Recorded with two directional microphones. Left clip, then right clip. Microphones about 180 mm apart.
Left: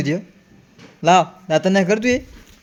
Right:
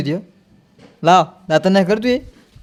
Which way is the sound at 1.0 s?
20° right (ahead or behind).